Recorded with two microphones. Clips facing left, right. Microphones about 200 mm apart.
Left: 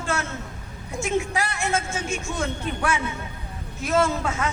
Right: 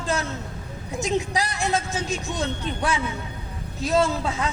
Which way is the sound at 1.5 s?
35° right (ahead or behind).